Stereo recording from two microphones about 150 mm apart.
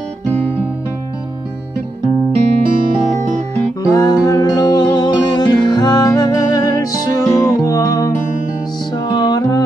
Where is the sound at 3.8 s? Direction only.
25° left (ahead or behind).